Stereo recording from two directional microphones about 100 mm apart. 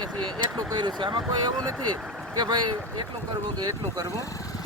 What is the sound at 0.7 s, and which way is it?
Vehicle, 45° right (ahead or behind).